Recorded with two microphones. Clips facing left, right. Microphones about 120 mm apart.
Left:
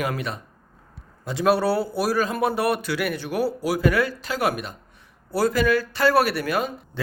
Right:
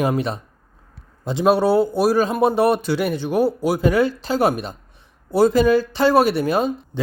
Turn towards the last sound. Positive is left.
turn(degrees=-25)  # may be behind; listen again after turning